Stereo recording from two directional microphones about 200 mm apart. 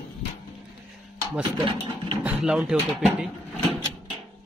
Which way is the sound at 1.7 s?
25° right (ahead or behind).